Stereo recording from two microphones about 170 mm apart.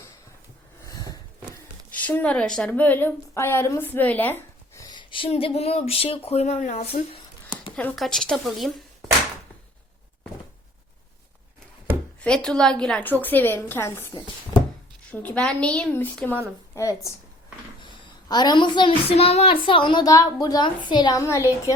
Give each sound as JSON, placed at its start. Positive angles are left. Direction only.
{"t": 0.9, "sound": "a sound", "side_deg": 20}
{"t": 2.0, "sound": "a woman's voice", "side_deg": 10}
{"t": 7.8, "sound": "speech", "side_deg": 5}
{"t": 12.2, "sound": "a woman's voice", "side_deg": 5}
{"t": 15.1, "sound": "a woman's voice", "side_deg": 10}
{"t": 18.3, "sound": "a woman's voice", "side_deg": 25}